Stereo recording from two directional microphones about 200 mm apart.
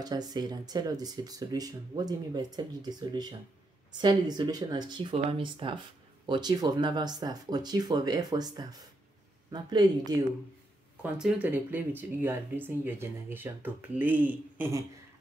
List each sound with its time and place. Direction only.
0.0 s speech: 20° right (ahead or behind)
11.0 s speech: 5° right (ahead or behind)